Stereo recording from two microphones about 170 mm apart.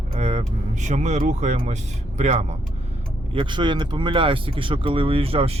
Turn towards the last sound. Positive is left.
turn(degrees=-35)  # may be behind; listen again after turning